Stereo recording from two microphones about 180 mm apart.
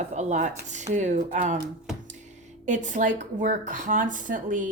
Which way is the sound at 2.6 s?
45° right (ahead or behind).